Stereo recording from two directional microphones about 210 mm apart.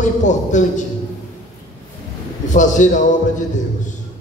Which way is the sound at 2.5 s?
35° left (ahead or behind).